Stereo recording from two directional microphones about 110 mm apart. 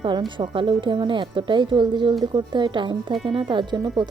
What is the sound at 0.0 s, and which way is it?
Speech, 45° right (ahead or behind).